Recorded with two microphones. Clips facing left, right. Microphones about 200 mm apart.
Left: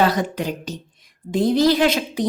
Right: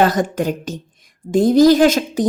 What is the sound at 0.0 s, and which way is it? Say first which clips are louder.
A woman's voice: right 4 dB; 45° right (ahead or behind).